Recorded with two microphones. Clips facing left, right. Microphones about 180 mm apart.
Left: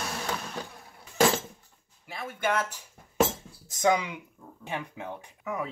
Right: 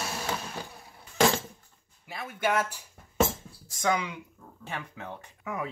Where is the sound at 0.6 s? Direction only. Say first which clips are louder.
Left 2 dB; 5° right (ahead or behind).